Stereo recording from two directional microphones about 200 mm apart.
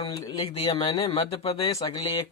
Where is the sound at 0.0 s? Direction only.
20° left (ahead or behind).